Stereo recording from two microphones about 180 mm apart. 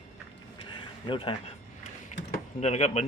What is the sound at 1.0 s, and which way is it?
Speech, 30° left (ahead or behind).